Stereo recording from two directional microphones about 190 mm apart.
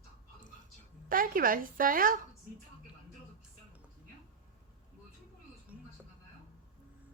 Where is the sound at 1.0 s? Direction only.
45° right (ahead or behind).